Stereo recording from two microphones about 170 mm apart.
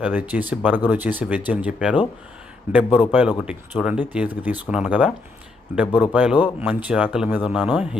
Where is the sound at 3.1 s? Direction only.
10° right (ahead or behind).